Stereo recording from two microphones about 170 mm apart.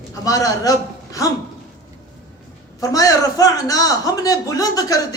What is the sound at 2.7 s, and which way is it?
A man's voice, 20° left (ahead or behind).